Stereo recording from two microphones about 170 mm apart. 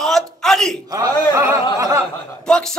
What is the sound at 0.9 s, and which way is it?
A man's voice, 20° right (ahead or behind).